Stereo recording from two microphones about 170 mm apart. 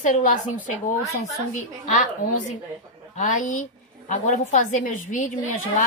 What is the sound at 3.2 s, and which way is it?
Speech, 45° left (ahead or behind).